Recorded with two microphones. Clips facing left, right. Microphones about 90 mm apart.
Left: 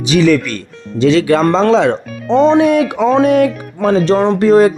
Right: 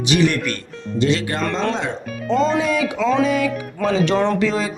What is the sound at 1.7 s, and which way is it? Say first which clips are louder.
Speech: left 13 dB; 85° left.